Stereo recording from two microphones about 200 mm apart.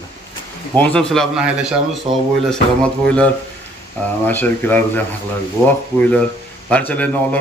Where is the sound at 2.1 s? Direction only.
25° right (ahead or behind).